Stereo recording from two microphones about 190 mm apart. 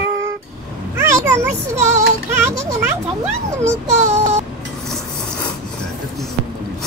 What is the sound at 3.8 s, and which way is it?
Child singing, 40° right (ahead or behind).